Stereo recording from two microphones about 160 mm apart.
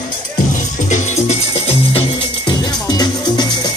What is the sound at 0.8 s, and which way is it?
Music, 45° left (ahead or behind).